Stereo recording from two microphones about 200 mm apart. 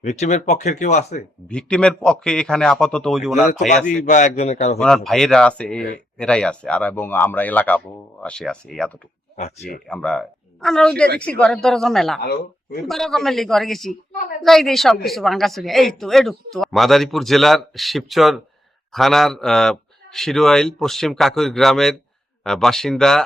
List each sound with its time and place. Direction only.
0.0 s speech: 35° left (ahead or behind)
1.5 s speech: 5° left (ahead or behind)
4.0 s speech: 40° left (ahead or behind)
4.8 s speech: centre (ahead or behind)
9.9 s speech: 5° left (ahead or behind)
12.2 s speech: 50° left (ahead or behind)
12.9 s speech: centre (ahead or behind)